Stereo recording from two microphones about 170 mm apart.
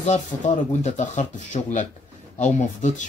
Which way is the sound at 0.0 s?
45° left (ahead or behind).